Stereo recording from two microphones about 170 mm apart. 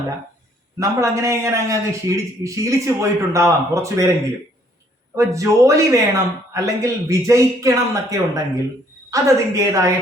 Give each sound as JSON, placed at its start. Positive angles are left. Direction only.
{"t": 0.8, "sound": "a man's voice", "side_deg": -20}
{"t": 5.1, "sound": "speech", "side_deg": -20}